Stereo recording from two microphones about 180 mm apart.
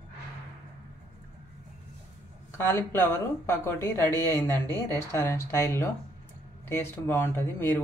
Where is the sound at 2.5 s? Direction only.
15° left (ahead or behind).